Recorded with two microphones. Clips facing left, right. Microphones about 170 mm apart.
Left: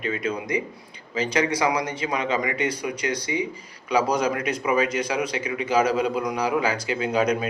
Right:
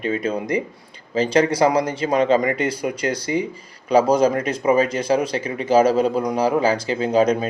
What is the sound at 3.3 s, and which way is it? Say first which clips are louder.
Speech: right 5 dB; 45° right (ahead or behind).